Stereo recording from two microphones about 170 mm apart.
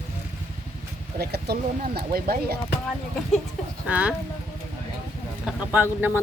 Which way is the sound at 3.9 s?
5° right (ahead or behind).